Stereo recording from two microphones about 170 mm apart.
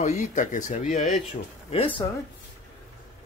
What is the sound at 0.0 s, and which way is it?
Speech, 45° left (ahead or behind).